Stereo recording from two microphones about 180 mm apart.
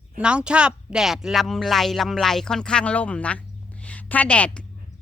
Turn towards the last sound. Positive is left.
turn(degrees=5)  # may be behind; listen again after turning